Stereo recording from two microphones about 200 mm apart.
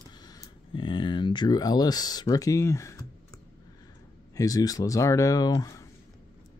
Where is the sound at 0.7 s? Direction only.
25° left (ahead or behind).